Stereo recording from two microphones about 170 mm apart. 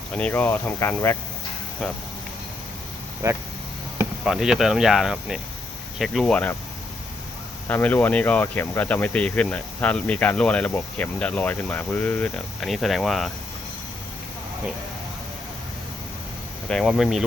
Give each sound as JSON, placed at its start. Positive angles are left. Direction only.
{"t": 0.1, "sound": "speech", "side_deg": 10}
{"t": 3.2, "sound": "speech", "side_deg": -15}
{"t": 4.2, "sound": "speech", "side_deg": -5}
{"t": 7.7, "sound": "speech", "side_deg": 10}
{"t": 16.6, "sound": "speech", "side_deg": 0}